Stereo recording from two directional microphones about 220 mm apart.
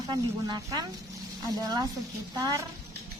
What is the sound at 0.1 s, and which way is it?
Speech, 20° right (ahead or behind).